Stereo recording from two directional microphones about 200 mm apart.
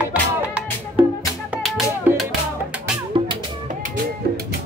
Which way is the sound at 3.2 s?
25° right (ahead or behind).